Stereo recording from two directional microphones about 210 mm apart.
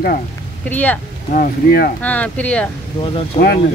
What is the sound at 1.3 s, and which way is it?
Speech, 45° left (ahead or behind).